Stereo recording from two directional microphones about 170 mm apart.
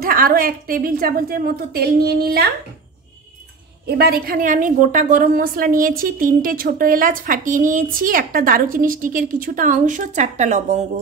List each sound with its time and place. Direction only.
0.0 s a woman's voice: 60° right (ahead or behind)
3.8 s a woman's voice: 70° right (ahead or behind); by 10.9 s 45° right (ahead or behind)